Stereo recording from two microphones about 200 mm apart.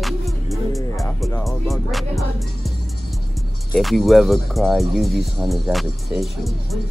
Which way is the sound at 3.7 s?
Centre (ahead or behind).